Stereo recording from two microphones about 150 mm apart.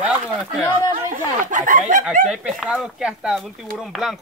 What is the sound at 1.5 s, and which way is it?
Speech, 60° right (ahead or behind).